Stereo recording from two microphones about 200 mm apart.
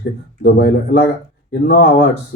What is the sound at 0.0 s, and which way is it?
Speech, 50° left (ahead or behind).